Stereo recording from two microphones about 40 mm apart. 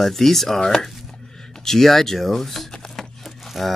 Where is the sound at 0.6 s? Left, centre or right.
Centre.